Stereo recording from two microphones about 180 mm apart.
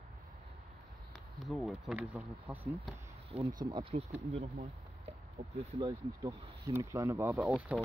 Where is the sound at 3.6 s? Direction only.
25° right (ahead or behind); by 7.8 s 5° right (ahead or behind).